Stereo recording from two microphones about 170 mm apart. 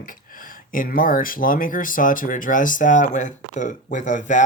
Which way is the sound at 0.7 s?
55° left (ahead or behind).